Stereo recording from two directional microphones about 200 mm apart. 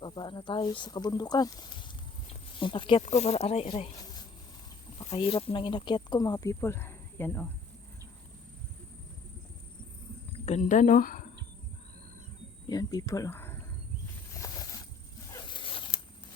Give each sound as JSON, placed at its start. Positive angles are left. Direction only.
{"t": 0.0, "sound": "speech", "side_deg": 25}
{"t": 10.3, "sound": "a woman's voice", "side_deg": 35}
{"t": 12.6, "sound": "speech", "side_deg": 20}
{"t": 14.3, "sound": "mechanisms", "side_deg": 20}
{"t": 15.3, "sound": "zipper", "side_deg": 20}